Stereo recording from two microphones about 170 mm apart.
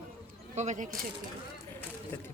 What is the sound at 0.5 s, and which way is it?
Speech, 45° right (ahead or behind).